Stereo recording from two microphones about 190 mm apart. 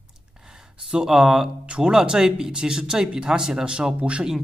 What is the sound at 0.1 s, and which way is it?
Speech, 5° right (ahead or behind).